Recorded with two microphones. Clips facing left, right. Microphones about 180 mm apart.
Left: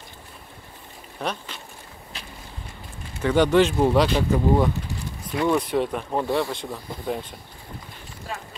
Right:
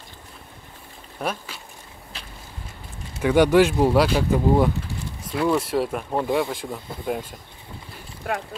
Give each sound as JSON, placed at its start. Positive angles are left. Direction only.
{"t": 1.2, "sound": "speech", "side_deg": -5}
{"t": 3.2, "sound": "speech", "side_deg": -10}
{"t": 8.3, "sound": "speech", "side_deg": -60}